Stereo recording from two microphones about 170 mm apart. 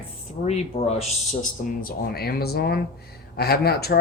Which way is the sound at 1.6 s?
60° left (ahead or behind).